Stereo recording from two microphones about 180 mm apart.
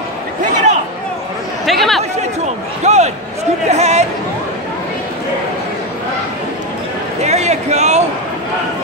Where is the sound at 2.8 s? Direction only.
40° right (ahead or behind).